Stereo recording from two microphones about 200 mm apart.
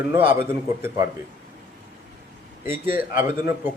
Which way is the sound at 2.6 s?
10° right (ahead or behind).